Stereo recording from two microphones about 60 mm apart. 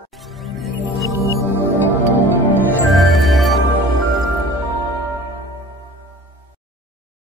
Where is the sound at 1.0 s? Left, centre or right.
Left.